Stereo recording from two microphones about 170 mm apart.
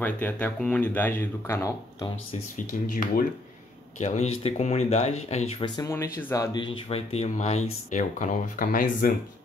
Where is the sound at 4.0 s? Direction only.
40° left (ahead or behind).